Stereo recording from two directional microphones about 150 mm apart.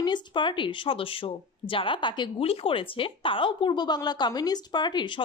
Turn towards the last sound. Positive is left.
turn(degrees=30)  # may be behind; listen again after turning